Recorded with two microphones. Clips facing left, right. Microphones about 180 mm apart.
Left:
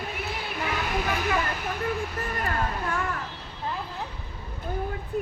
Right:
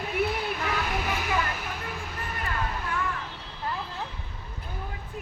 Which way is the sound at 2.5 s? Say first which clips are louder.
Left 1 dB; 45° left (ahead or behind).